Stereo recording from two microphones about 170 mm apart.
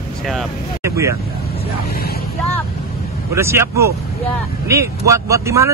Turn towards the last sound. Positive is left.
turn(degrees=-20)  # may be behind; listen again after turning